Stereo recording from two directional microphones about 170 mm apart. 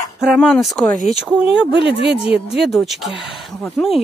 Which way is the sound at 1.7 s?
90° right.